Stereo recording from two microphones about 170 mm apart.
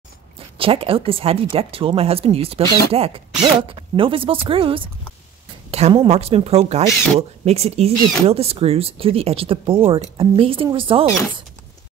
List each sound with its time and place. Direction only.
0.6 s a woman's voice: 30° right (ahead or behind)